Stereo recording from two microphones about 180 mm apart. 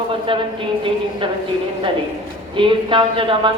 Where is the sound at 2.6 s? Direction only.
30° right (ahead or behind).